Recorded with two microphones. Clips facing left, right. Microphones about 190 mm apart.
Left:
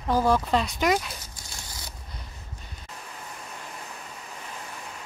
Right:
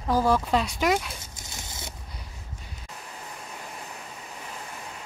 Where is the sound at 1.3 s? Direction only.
25° right (ahead or behind).